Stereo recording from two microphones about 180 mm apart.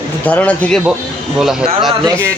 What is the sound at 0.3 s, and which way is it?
A man's voice, 10° left (ahead or behind).